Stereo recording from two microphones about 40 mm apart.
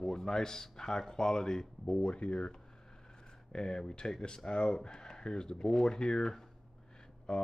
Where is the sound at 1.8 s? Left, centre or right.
Left.